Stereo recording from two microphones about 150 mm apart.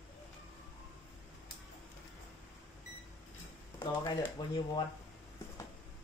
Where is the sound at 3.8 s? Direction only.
25° left (ahead or behind).